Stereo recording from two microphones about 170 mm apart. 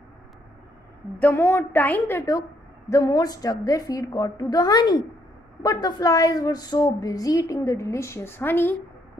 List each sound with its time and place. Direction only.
1.2 s a woman's voice: 10° left (ahead or behind)